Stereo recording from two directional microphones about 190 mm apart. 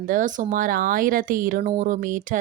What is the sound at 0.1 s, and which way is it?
Speech, 45° right (ahead or behind).